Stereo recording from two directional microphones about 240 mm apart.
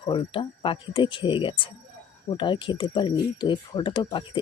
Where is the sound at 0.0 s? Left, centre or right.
Left.